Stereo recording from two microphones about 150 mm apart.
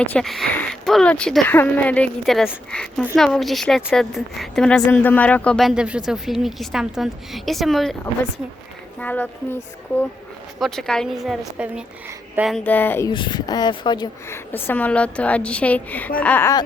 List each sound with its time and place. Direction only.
0.0 s a woman's voice: 5° left (ahead or behind)
9.0 s a woman's voice: 10° left (ahead or behind)
12.6 s speech: 10° left (ahead or behind)
13.1 s speech: 30° left (ahead or behind)
14.3 s speech: 10° left (ahead or behind)